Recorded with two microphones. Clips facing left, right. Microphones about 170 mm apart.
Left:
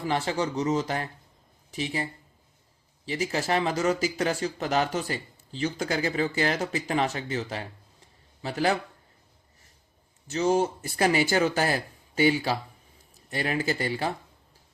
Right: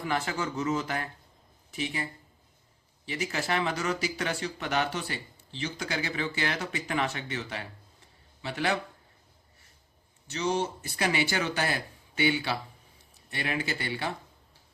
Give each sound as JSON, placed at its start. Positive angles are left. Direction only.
{"t": 0.0, "sound": "speech", "side_deg": 30}
{"t": 3.1, "sound": "a man's voice", "side_deg": 35}
{"t": 10.3, "sound": "speech", "side_deg": 45}